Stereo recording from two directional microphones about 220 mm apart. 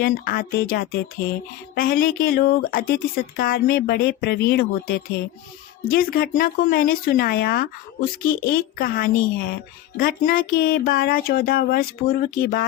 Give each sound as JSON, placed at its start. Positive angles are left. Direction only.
{"t": 0.0, "sound": "speech", "side_deg": 40}